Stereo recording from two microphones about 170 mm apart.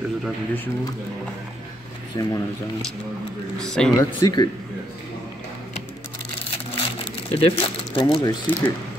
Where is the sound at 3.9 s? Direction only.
25° left (ahead or behind).